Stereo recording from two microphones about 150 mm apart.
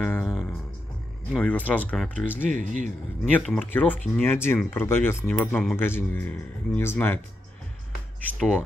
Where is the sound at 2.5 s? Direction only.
55° right (ahead or behind).